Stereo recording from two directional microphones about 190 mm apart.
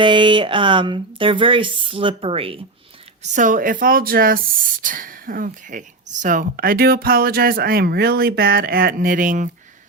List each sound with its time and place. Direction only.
0.0 s speech: 25° right (ahead or behind)
3.3 s speech: 45° right (ahead or behind)